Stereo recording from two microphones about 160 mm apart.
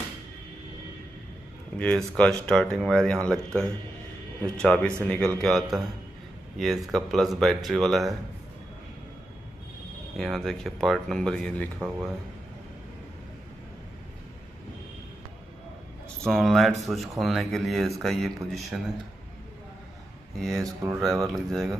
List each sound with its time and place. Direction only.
1.8 s speech: 10° left (ahead or behind)
4.6 s speech: 5° left (ahead or behind)
10.1 s speech: centre (ahead or behind)
16.3 s speech: centre (ahead or behind)
20.3 s speech: centre (ahead or behind)